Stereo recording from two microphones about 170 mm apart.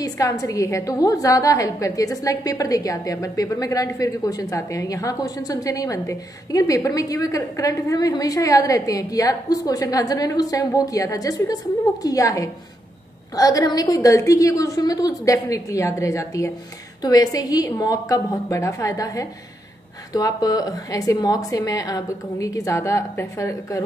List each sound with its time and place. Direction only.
0.0 s a woman's voice: 20° left (ahead or behind)